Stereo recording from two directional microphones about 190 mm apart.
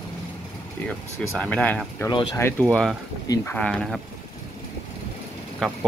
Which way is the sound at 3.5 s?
5° left (ahead or behind).